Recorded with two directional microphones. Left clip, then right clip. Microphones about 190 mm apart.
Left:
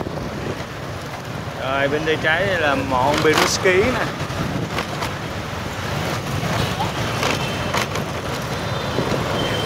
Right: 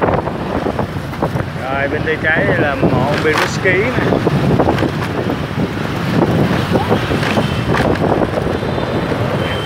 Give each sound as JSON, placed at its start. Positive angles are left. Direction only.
{"t": 1.8, "sound": "speech", "side_deg": 5}